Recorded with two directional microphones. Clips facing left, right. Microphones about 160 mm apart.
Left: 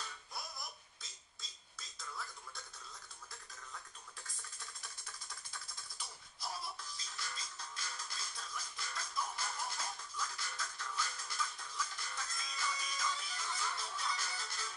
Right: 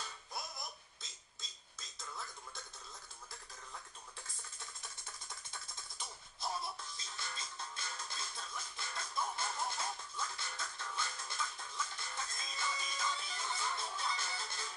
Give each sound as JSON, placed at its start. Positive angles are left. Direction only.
{"t": 5.5, "sound": "music", "side_deg": -25}